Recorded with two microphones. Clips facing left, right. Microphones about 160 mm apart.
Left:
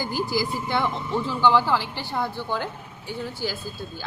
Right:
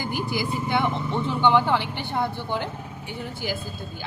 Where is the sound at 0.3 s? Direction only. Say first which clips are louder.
Right 1 dB; 20° right (ahead or behind).